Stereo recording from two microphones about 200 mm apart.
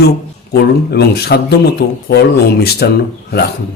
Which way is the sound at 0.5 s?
50° left (ahead or behind).